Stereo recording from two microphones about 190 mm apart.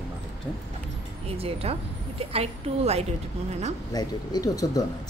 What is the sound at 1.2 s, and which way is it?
A woman's voice, 30° right (ahead or behind).